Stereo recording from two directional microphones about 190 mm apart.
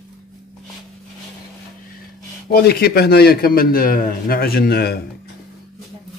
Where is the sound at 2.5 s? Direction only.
55° left (ahead or behind).